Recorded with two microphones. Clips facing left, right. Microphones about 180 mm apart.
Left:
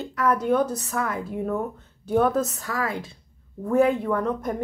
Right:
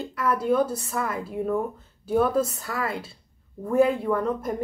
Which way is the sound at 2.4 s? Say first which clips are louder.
Left 1 dB; 35° right (ahead or behind).